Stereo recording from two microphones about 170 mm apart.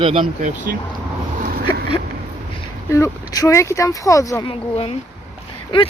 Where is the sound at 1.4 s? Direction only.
60° right (ahead or behind).